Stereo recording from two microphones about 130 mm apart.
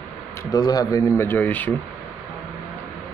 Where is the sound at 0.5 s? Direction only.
30° left (ahead or behind).